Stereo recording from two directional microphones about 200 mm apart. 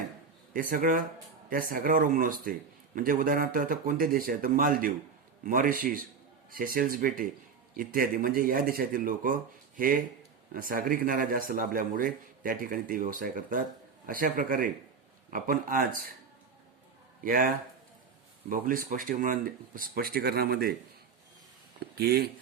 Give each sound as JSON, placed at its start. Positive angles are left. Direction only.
{"t": 0.5, "sound": "a man's voice", "side_deg": -45}
{"t": 17.2, "sound": "a man's voice", "side_deg": -45}
{"t": 21.8, "sound": "speech", "side_deg": -50}